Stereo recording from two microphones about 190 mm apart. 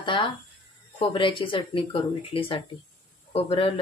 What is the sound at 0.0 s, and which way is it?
Speech, 25° left (ahead or behind).